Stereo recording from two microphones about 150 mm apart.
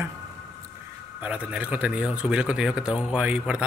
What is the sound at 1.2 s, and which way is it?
A man's voice, 10° right (ahead or behind).